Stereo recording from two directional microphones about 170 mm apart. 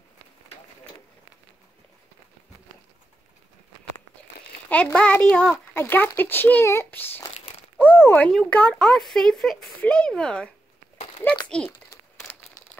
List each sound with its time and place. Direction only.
4.6 s a child's voice: 10° left (ahead or behind)
7.2 s crumpling: 35° left (ahead or behind)
7.7 s a sound: 10° left (ahead or behind)
8.3 s speech: 5° left (ahead or behind)